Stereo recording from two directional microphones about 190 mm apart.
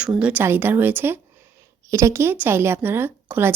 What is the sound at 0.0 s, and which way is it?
A woman's voice, 5° right (ahead or behind).